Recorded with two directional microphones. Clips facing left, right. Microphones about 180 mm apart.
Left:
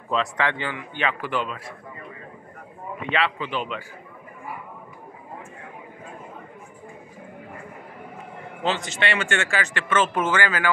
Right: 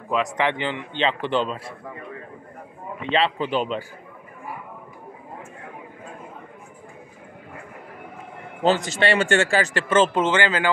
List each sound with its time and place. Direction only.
0.1 s a man's voice: 15° right (ahead or behind)
3.1 s speech: 30° right (ahead or behind)
8.6 s speech: 40° right (ahead or behind); by 10.7 s 25° right (ahead or behind)